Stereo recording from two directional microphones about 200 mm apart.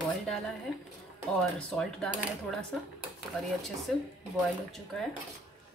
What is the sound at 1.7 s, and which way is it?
A woman's voice, centre (ahead or behind).